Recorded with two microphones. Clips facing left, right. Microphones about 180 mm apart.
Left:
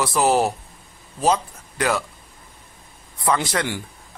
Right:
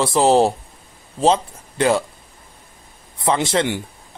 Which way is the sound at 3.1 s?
25° right (ahead or behind).